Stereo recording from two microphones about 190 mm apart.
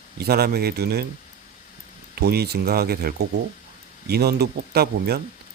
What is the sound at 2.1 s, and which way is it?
A man's voice, 55° right (ahead or behind).